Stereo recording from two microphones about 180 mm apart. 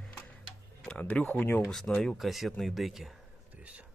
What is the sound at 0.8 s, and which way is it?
Speech, 10° left (ahead or behind).